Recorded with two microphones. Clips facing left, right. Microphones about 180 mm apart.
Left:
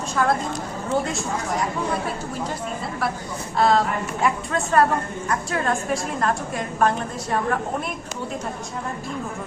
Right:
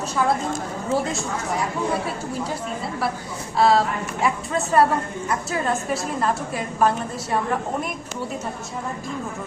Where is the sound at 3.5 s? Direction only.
5° right (ahead or behind).